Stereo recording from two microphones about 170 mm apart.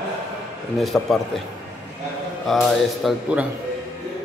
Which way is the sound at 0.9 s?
5° left (ahead or behind).